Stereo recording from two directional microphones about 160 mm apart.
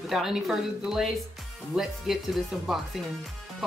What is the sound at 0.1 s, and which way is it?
Speech, centre (ahead or behind).